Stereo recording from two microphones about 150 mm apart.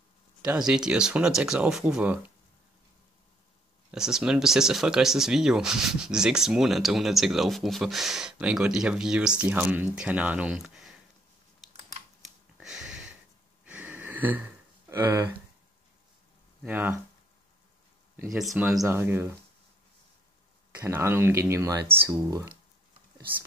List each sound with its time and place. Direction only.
0.6 s speech: 5° right (ahead or behind)
3.9 s speech: 5° right (ahead or behind)
12.5 s a sound: 5° right (ahead or behind)
14.9 s speech: 15° right (ahead or behind)
16.6 s speech: 10° right (ahead or behind)
18.3 s speech: centre (ahead or behind)
18.9 s speech: 15° right (ahead or behind)
20.8 s speech: 15° right (ahead or behind)